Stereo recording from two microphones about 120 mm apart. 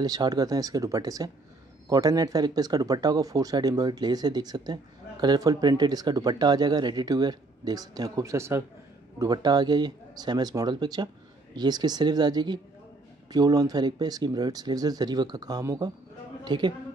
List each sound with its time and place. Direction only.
0.0 s speech: 30° right (ahead or behind)
9.2 s speech: 35° right (ahead or behind)